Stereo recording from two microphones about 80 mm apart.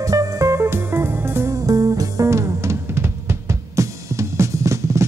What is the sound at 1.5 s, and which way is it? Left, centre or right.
Music, right.